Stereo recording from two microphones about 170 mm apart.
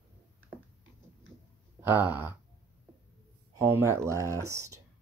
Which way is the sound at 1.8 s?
10° right (ahead or behind).